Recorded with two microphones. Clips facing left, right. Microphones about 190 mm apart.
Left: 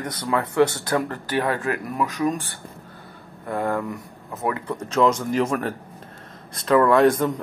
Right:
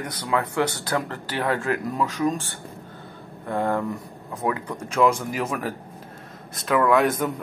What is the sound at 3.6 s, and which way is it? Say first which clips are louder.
Speech: even; 15° right (ahead or behind).